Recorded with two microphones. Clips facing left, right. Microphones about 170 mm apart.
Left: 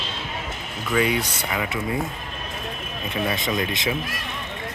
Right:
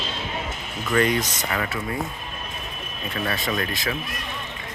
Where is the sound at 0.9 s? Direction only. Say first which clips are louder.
Right 1 dB; 5° left (ahead or behind).